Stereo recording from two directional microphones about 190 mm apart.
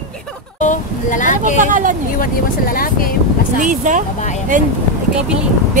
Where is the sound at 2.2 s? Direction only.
50° left (ahead or behind).